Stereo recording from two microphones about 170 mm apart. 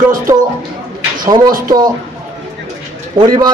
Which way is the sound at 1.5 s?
55° right (ahead or behind).